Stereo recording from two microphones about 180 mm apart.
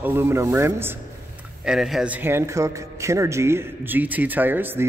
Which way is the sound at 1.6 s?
Centre (ahead or behind).